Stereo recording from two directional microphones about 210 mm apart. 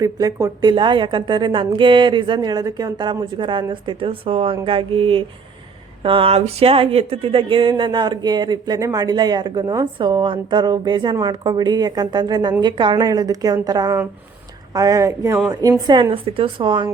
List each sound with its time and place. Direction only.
0.0 s speech: 15° right (ahead or behind)